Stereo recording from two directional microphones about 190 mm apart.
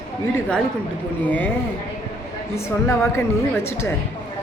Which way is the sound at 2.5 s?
15° left (ahead or behind).